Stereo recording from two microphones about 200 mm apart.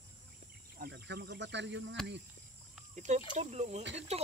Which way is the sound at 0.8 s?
55° right (ahead or behind).